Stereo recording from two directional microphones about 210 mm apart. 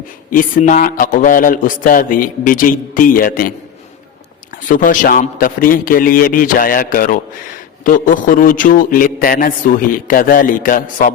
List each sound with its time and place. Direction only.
0.3 s a man's voice: 40° left (ahead or behind)
4.7 s a man's voice: 40° left (ahead or behind)